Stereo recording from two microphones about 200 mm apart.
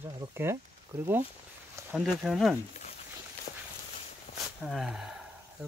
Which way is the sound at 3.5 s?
40° left (ahead or behind).